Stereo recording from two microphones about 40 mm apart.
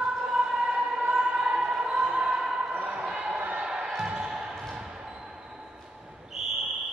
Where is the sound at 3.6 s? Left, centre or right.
Centre.